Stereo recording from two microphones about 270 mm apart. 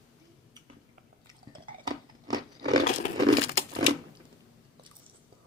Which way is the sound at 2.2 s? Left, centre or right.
Centre.